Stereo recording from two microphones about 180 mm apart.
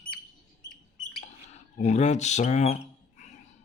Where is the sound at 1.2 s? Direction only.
40° left (ahead or behind).